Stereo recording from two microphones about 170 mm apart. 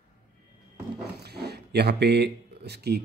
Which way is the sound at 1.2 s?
70° right (ahead or behind).